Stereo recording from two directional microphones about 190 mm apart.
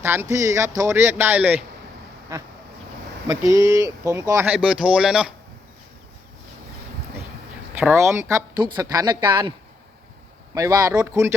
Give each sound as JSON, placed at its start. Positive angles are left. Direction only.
{"t": 0.0, "sound": "speech", "side_deg": -10}
{"t": 3.5, "sound": "speech", "side_deg": -15}
{"t": 7.8, "sound": "a woman's voice", "side_deg": -10}
{"t": 10.5, "sound": "speech", "side_deg": -15}